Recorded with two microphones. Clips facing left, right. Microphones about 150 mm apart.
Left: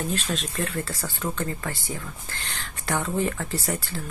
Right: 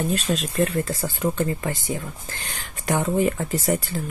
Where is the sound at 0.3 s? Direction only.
25° right (ahead or behind).